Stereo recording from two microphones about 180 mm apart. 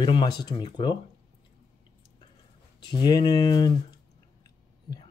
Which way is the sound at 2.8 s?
25° left (ahead or behind).